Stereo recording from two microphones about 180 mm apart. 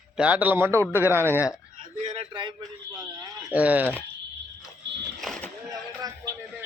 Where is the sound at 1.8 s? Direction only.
40° right (ahead or behind).